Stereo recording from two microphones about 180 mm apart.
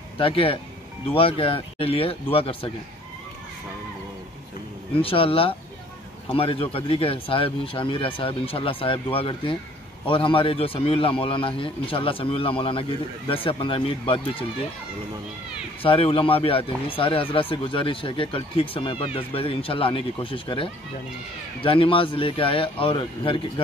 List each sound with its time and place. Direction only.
0.2 s speech: 30° left (ahead or behind)
4.9 s a man's voice: 30° left (ahead or behind)
15.8 s a man's voice: 30° left (ahead or behind)